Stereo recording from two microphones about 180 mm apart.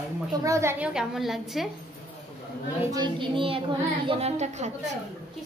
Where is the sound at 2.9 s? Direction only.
25° right (ahead or behind).